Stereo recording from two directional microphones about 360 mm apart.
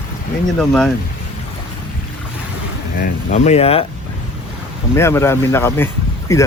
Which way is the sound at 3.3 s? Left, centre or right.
Centre.